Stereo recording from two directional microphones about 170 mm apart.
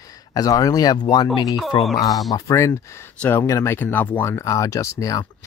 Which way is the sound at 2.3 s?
15° left (ahead or behind).